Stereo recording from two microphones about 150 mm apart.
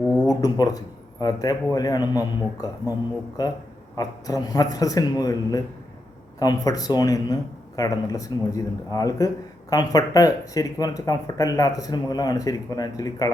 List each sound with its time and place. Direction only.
0.3 s speech: 25° left (ahead or behind)